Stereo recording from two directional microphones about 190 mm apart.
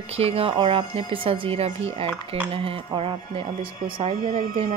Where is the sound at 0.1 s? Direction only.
30° right (ahead or behind).